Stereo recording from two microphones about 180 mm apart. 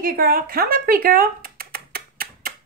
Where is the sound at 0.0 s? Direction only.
55° right (ahead or behind).